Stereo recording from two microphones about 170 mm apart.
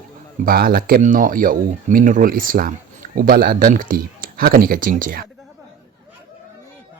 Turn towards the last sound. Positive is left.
turn(degrees=-55)  # may be behind; listen again after turning